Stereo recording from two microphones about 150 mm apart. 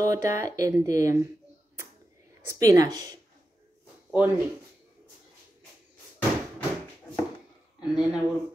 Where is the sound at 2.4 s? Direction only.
25° right (ahead or behind).